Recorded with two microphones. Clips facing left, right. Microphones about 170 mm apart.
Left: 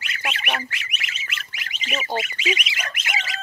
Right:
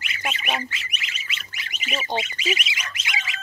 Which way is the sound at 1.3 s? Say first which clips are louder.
Left 1 dB; 50° left (ahead or behind).